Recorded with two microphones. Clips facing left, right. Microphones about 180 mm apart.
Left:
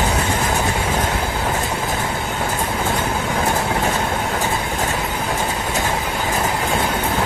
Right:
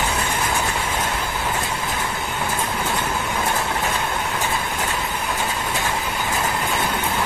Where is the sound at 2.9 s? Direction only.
45° left (ahead or behind).